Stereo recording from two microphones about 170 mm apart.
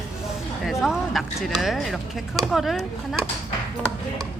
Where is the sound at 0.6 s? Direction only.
Centre (ahead or behind).